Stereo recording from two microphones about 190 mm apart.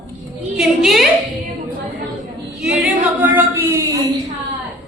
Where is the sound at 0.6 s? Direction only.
Centre (ahead or behind).